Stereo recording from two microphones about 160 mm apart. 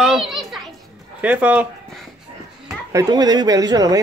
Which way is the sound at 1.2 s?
10° right (ahead or behind).